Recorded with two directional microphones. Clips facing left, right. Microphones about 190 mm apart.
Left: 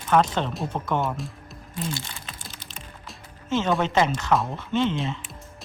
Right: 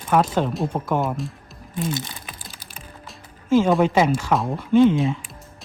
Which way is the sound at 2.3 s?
10° right (ahead or behind).